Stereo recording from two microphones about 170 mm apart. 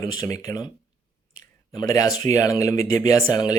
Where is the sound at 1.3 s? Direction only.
20° left (ahead or behind).